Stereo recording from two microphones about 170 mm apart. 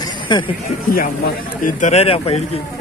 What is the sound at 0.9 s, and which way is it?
Speech, 55° left (ahead or behind).